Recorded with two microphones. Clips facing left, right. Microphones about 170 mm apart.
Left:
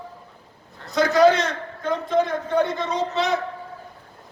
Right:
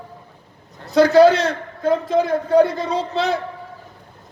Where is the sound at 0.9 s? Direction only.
30° right (ahead or behind).